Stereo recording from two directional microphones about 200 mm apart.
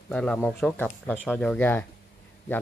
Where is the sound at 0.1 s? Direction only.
5° left (ahead or behind).